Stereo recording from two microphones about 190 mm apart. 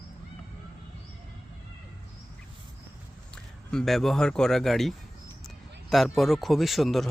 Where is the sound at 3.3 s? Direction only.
5° left (ahead or behind).